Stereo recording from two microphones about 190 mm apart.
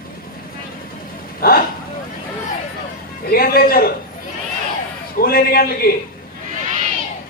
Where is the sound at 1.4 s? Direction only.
50° left (ahead or behind).